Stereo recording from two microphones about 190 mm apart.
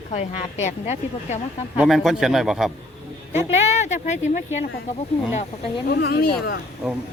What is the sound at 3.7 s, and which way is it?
Speech, 35° left (ahead or behind).